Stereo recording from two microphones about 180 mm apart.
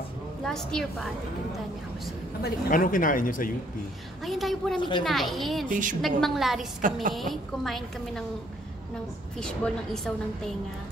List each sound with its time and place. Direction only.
0.5 s a woman's voice: 5° left (ahead or behind)
2.4 s speech: 50° left (ahead or behind)
4.2 s a woman's voice: centre (ahead or behind)
4.7 s a woman's voice: 25° left (ahead or behind)
5.0 s a woman's voice: centre (ahead or behind)
5.7 s a woman's voice: 45° right (ahead or behind)
5.9 s a woman's voice: centre (ahead or behind)
6.8 s a woman's voice: 50° right (ahead or behind)
7.2 s a woman's voice: centre (ahead or behind)
9.6 s a woman's voice: 5° left (ahead or behind)